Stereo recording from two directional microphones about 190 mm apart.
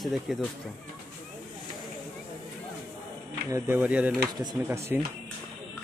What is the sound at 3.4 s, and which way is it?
Speech, 15° right (ahead or behind).